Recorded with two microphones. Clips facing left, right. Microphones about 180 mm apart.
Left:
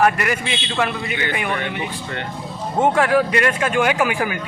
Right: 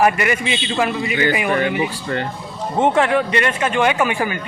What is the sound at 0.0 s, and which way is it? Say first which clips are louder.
Speech: right 1 dB; 5° right (ahead or behind).